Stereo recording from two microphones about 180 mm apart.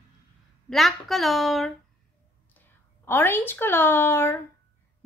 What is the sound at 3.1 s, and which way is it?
A woman's voice, 10° left (ahead or behind).